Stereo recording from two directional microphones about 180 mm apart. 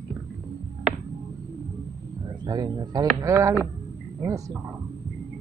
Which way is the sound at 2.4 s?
25° right (ahead or behind).